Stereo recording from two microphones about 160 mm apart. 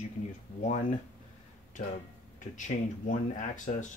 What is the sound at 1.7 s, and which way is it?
Speech, 55° left (ahead or behind).